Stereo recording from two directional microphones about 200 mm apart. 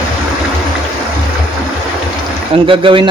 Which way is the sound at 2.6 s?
25° right (ahead or behind).